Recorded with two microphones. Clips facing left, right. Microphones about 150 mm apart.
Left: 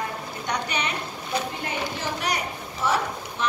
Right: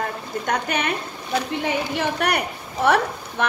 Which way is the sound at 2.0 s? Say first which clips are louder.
Right 6 dB; 60° right (ahead or behind).